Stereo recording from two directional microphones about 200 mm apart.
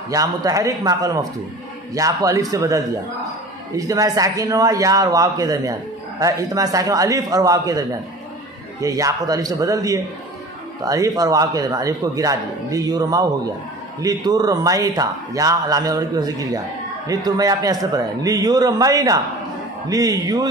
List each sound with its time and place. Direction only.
0.1 s a man's voice: 20° right (ahead or behind)
8.8 s a man's voice: 15° right (ahead or behind)